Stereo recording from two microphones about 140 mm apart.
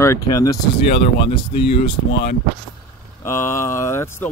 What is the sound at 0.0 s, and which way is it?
Speech, 20° left (ahead or behind).